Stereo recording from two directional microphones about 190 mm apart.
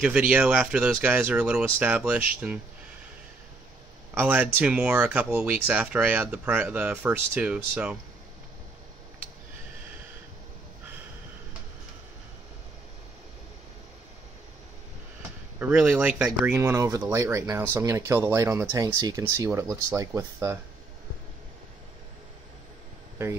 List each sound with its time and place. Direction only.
0.0 s speech: 10° right (ahead or behind)
4.1 s speech: 10° right (ahead or behind)
15.6 s speech: 5° right (ahead or behind)